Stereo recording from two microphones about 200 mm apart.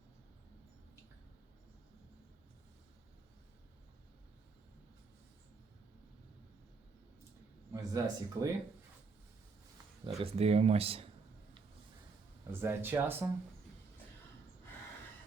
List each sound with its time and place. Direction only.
7.7 s speech: 15° right (ahead or behind)
10.2 s speech: 30° right (ahead or behind)
12.5 s speech: 10° right (ahead or behind)